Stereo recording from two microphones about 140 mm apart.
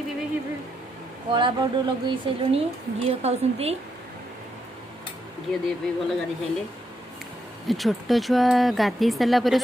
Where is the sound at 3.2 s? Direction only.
50° right (ahead or behind).